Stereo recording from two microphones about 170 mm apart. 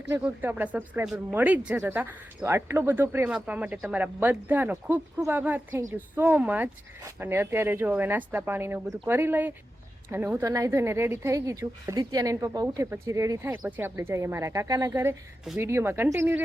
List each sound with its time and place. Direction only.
0.1 s a woman's voice: 10° right (ahead or behind)